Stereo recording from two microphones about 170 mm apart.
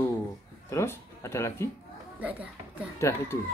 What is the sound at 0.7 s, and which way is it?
Speech, 15° left (ahead or behind).